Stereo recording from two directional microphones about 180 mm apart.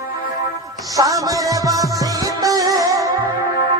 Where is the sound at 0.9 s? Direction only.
20° right (ahead or behind).